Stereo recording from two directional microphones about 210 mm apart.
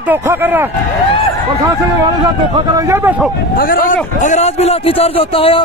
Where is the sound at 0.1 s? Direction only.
10° right (ahead or behind).